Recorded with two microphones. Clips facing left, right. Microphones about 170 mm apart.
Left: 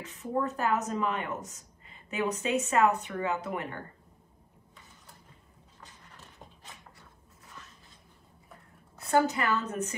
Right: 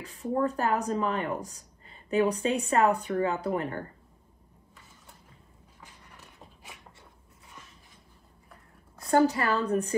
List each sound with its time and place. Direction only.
0.0 s speech: 35° right (ahead or behind)
9.1 s speech: 35° right (ahead or behind)